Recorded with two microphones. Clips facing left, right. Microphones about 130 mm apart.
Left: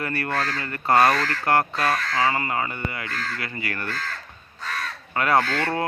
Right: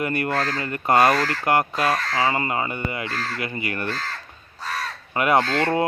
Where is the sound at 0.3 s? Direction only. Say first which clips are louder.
Right 2 dB; 35° right (ahead or behind).